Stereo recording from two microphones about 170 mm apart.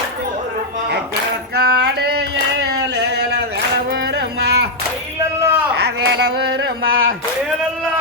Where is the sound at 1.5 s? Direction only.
70° right (ahead or behind).